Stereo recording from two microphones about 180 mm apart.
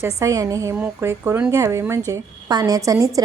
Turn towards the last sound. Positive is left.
turn(degrees=-20)  # may be behind; listen again after turning